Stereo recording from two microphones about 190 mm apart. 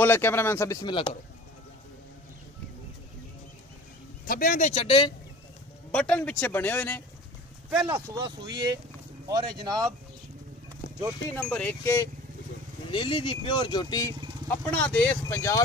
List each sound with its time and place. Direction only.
0.0 s speech: 10° left (ahead or behind)
4.3 s speech: 45° left (ahead or behind)
4.8 s speech: 25° left (ahead or behind)
5.9 s speech: 5° left (ahead or behind)
7.8 s speech: 25° right (ahead or behind)
11.3 s speech: 5° left (ahead or behind)
12.9 s speech: 25° left (ahead or behind)
14.5 s speech: 10° left (ahead or behind)